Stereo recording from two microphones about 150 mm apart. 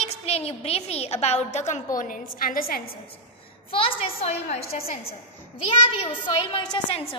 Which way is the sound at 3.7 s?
40° left (ahead or behind).